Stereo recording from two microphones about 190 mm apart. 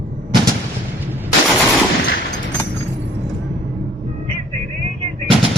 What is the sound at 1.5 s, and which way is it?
Machine gun, centre (ahead or behind).